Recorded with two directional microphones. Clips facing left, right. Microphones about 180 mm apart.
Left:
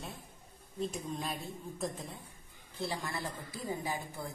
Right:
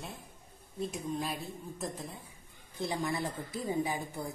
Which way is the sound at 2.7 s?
20° right (ahead or behind).